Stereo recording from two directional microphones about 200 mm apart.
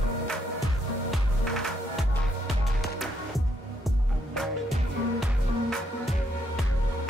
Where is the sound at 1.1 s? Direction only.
Centre (ahead or behind).